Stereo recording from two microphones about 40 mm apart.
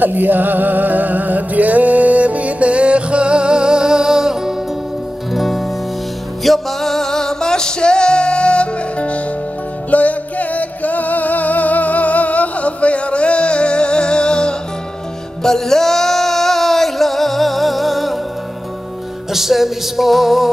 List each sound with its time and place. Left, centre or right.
0.0 s music: right; by 4.6 s centre
5.3 s music: centre; by 14.5 s left
15.4 s a sound: centre
19.3 s music: centre